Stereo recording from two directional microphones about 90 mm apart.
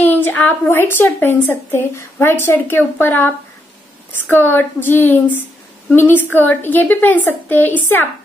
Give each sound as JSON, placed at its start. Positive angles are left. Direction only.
{"t": 0.0, "sound": "a woman's voice", "side_deg": 20}